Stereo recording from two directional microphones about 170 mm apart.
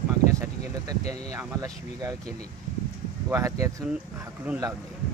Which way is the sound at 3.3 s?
20° right (ahead or behind).